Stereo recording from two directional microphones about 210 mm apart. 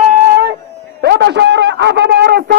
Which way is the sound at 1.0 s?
50° right (ahead or behind).